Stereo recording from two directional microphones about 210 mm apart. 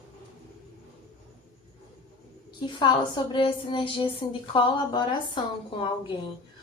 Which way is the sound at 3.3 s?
25° left (ahead or behind).